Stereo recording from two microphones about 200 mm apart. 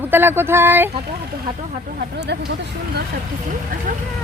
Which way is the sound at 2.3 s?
55° right (ahead or behind).